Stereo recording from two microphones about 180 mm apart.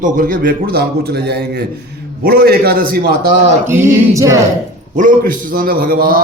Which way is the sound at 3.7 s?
15° right (ahead or behind).